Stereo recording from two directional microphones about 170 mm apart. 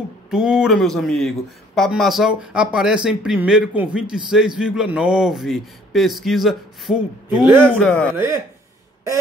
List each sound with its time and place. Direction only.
0.3 s speech: 5° right (ahead or behind)
7.8 s speech: 5° left (ahead or behind)
8.1 s speech: 15° right (ahead or behind)